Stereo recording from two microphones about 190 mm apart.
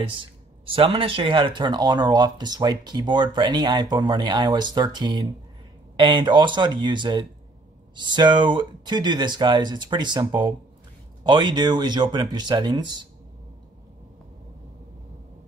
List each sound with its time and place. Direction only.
0.0 s speech: 30° right (ahead or behind)